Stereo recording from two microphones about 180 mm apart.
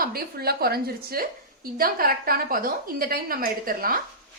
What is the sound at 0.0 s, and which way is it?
A woman's voice, 60° right (ahead or behind).